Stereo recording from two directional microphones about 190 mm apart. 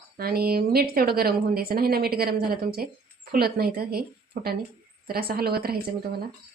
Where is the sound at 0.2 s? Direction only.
55° right (ahead or behind).